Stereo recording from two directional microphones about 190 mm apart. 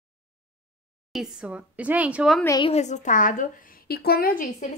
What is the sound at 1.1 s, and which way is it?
A woman's voice, 5° right (ahead or behind).